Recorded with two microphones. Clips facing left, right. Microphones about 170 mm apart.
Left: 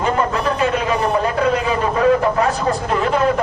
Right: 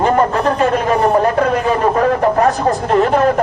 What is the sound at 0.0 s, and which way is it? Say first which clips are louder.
A man's voice: right 5 dB; 45° right (ahead or behind).